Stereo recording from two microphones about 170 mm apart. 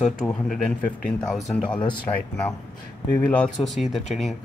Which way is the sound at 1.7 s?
30° left (ahead or behind).